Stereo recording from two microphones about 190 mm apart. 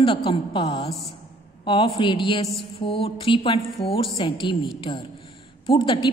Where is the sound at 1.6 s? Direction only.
25° left (ahead or behind).